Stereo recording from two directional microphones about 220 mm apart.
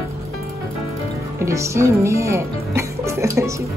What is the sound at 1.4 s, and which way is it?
Speech, 15° right (ahead or behind).